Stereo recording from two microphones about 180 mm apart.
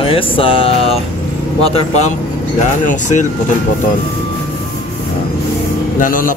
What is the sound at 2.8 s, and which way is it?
Speech, 45° left (ahead or behind).